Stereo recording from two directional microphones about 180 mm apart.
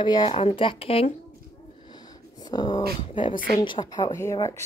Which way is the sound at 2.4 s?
25° left (ahead or behind).